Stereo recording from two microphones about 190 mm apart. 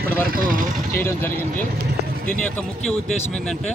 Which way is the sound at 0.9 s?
10° left (ahead or behind).